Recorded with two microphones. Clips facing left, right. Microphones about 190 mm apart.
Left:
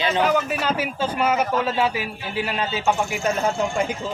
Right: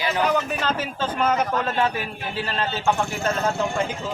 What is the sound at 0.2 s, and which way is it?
A man's voice, 5° left (ahead or behind).